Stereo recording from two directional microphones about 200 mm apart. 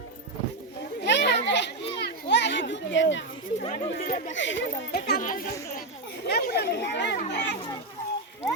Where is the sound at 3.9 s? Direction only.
50° left (ahead or behind).